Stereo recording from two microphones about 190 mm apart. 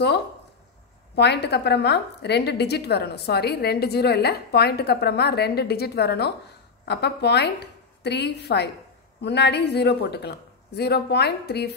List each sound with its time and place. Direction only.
1.1 s a woman's voice: 60° left (ahead or behind)